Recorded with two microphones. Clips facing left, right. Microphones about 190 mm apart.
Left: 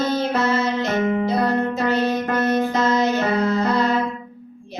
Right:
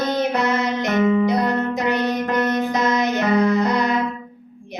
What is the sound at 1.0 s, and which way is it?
Music, 35° left (ahead or behind).